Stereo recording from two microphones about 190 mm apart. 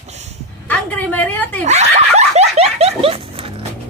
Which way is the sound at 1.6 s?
35° right (ahead or behind).